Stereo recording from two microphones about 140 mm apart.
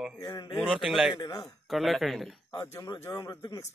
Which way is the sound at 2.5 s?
20° left (ahead or behind).